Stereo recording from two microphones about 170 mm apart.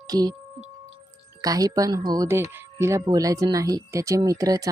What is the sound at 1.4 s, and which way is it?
Speech, 20° right (ahead or behind).